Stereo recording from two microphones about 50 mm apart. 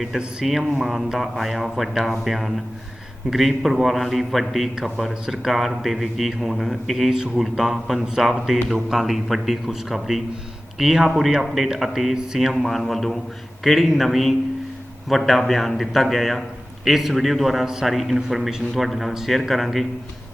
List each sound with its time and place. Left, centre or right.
0.4 s speech: centre